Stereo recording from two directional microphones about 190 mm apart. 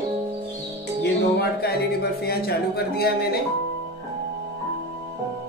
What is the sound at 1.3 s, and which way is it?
Speech, 55° left (ahead or behind).